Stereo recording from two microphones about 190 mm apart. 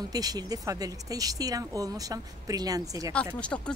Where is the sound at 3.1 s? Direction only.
5° left (ahead or behind).